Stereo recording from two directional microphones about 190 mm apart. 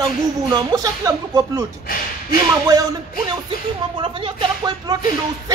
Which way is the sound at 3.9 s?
25° right (ahead or behind).